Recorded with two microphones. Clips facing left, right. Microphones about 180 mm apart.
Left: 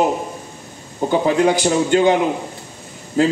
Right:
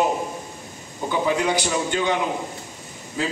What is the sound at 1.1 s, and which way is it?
Speech, 50° left (ahead or behind).